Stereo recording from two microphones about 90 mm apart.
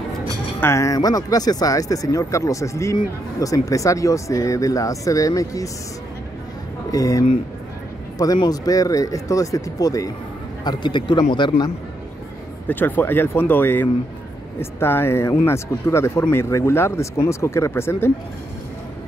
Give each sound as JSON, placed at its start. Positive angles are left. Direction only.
{"t": 0.6, "sound": "speech", "side_deg": 30}
{"t": 6.9, "sound": "speech", "side_deg": 40}
{"t": 8.5, "sound": "speech", "side_deg": 45}
{"t": 10.6, "sound": "a man's voice", "side_deg": 55}
{"t": 12.6, "sound": "speech", "side_deg": 20}